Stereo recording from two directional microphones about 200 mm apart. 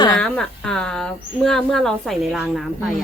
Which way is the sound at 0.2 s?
5° left (ahead or behind).